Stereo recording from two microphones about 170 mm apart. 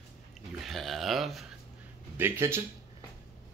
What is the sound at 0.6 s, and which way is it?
Speech, centre (ahead or behind).